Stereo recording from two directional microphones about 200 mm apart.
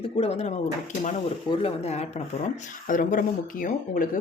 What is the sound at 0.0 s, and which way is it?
Speech, 30° left (ahead or behind).